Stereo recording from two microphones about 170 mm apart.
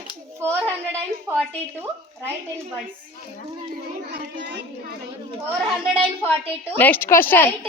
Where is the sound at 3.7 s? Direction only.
90° right.